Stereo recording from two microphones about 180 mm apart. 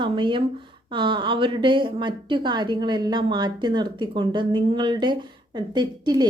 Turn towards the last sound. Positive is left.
turn(degrees=-25)  # may be behind; listen again after turning